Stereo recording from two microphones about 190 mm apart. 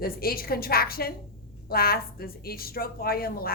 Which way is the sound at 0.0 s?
50° left (ahead or behind).